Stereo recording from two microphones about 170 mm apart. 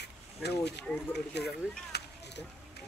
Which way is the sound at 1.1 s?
75° left (ahead or behind).